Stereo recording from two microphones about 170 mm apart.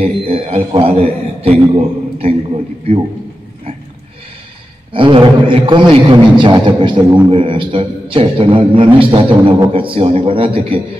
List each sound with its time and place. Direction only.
0.0 s a man's voice: 35° right (ahead or behind)
4.9 s a man's voice: 30° right (ahead or behind)